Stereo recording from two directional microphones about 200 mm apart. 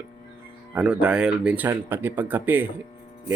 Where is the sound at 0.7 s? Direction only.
5° right (ahead or behind).